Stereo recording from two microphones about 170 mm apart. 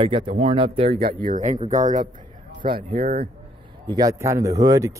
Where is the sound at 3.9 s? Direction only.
20° right (ahead or behind).